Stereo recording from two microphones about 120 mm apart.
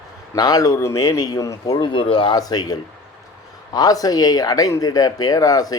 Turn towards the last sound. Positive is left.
turn(degrees=30)  # may be behind; listen again after turning